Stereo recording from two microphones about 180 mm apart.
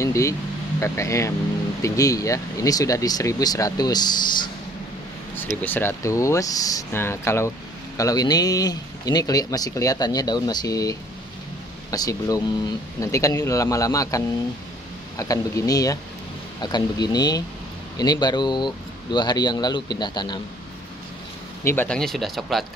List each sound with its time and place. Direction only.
0.0 s speech: 15° left (ahead or behind)
5.5 s speech: 10° left (ahead or behind); by 20.3 s 25° left (ahead or behind)
21.6 s speech: 10° left (ahead or behind)